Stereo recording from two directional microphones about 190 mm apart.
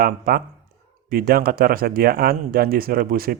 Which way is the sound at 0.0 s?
50° right (ahead or behind).